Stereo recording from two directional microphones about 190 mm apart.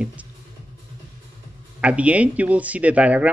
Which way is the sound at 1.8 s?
5° right (ahead or behind).